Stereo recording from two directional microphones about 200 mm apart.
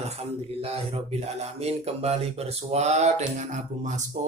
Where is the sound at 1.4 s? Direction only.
30° right (ahead or behind).